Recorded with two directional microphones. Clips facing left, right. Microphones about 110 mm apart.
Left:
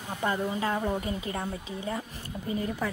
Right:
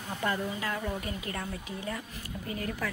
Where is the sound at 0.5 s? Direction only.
30° left (ahead or behind).